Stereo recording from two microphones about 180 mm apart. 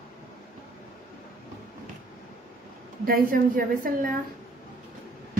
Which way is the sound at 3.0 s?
55° right (ahead or behind).